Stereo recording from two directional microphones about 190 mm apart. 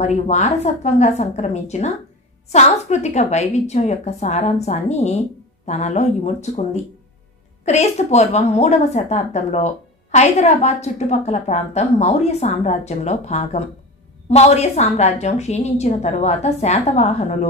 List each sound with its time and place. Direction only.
0.0 s a woman's voice: 35° left (ahead or behind)